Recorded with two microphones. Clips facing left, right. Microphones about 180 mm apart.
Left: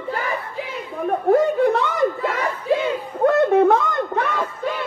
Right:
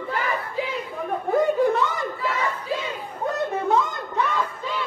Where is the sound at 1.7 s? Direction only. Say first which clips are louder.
Left 5 dB; 65° left (ahead or behind).